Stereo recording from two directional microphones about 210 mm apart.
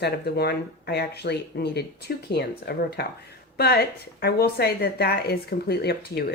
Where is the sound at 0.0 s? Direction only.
50° left (ahead or behind).